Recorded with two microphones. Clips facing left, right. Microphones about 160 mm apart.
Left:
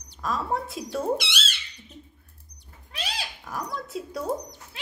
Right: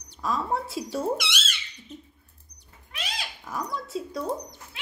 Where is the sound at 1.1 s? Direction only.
30° left (ahead or behind).